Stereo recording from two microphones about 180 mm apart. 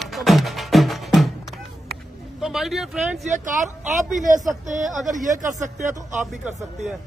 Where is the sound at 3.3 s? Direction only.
45° right (ahead or behind).